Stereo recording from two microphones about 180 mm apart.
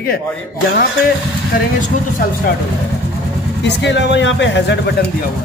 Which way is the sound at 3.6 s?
75° left (ahead or behind).